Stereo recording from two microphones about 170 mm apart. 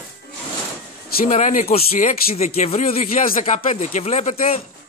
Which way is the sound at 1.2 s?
45° left (ahead or behind).